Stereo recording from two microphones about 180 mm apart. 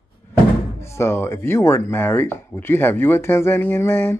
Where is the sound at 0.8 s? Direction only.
15° left (ahead or behind).